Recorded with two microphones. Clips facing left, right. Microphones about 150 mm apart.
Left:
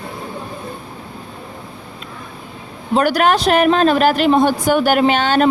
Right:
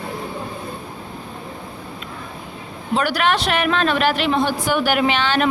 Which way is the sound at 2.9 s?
45° left (ahead or behind).